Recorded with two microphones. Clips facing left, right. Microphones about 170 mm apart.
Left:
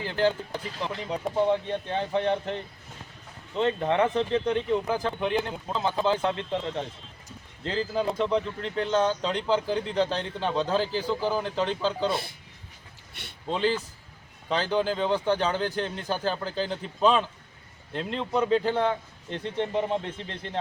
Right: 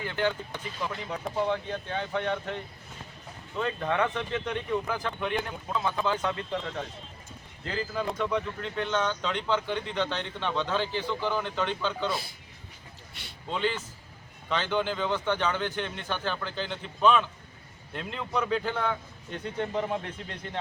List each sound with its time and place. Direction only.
0.0 s speech: 35° left (ahead or behind)
7.3 s bird: 30° left (ahead or behind)
8.2 s speech: 30° left (ahead or behind)
13.5 s speech: 35° left (ahead or behind)